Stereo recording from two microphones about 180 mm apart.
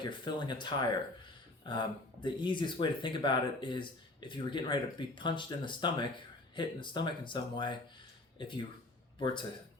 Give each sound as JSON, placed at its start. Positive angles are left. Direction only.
{"t": 0.0, "sound": "speech", "side_deg": 25}